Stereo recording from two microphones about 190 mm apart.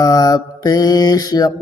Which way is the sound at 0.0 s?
20° left (ahead or behind).